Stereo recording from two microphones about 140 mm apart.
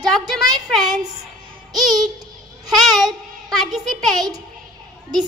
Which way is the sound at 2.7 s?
Centre (ahead or behind).